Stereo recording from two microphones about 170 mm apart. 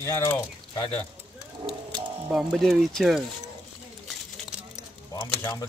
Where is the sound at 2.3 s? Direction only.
Centre (ahead or behind).